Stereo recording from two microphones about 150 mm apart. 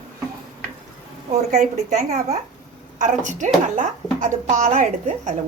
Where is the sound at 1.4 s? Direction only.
55° right (ahead or behind).